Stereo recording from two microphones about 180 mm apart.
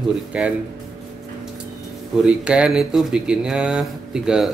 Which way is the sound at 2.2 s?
5° right (ahead or behind).